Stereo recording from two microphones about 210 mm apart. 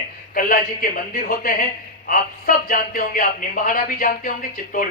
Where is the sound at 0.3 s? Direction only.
40° left (ahead or behind).